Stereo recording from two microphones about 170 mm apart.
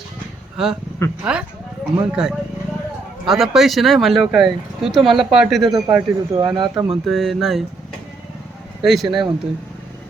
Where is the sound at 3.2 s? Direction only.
Centre (ahead or behind).